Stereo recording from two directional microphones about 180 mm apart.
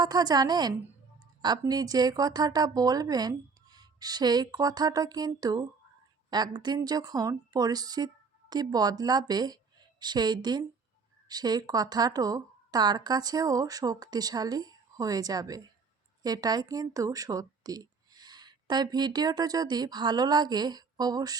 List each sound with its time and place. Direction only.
0.0 s a woman's voice: 20° right (ahead or behind)